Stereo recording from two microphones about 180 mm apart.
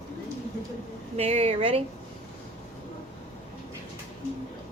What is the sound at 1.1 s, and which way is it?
Speech, 35° right (ahead or behind).